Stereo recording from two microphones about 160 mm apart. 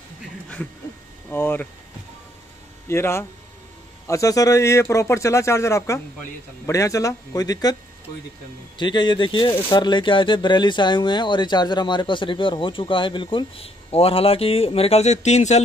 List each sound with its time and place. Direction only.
1.3 s speech: 15° left (ahead or behind)
2.9 s speech: 15° left (ahead or behind)
8.7 s speech: 30° left (ahead or behind); by 15.6 s 45° left (ahead or behind)